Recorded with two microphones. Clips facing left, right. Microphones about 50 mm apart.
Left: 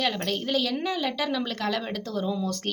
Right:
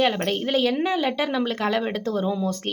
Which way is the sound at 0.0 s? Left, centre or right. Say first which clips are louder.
Right 5 dB; right.